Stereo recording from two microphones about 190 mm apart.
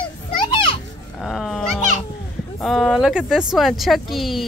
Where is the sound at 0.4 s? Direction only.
25° left (ahead or behind).